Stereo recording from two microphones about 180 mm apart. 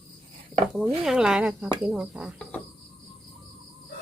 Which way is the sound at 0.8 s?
5° right (ahead or behind).